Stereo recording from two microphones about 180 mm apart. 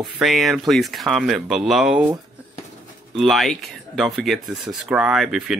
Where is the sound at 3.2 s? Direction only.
Centre (ahead or behind).